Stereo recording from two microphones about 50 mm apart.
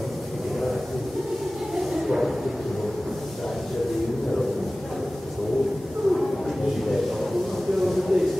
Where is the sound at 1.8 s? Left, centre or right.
Centre.